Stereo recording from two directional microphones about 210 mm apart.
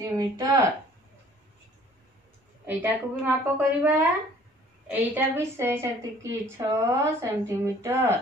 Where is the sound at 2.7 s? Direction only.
10° right (ahead or behind).